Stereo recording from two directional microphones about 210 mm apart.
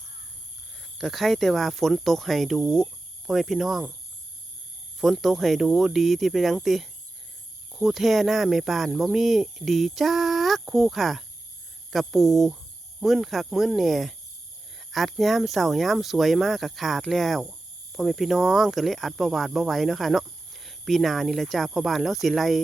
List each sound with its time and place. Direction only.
0.9 s speech: centre (ahead or behind)
2.6 s speech: 15° right (ahead or behind)
3.2 s speech: centre (ahead or behind)
4.9 s speech: centre (ahead or behind)